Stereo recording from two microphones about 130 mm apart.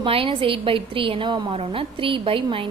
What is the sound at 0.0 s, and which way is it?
A woman's voice, 45° right (ahead or behind).